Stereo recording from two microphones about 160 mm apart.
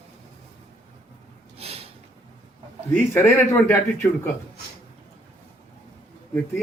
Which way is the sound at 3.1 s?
15° left (ahead or behind).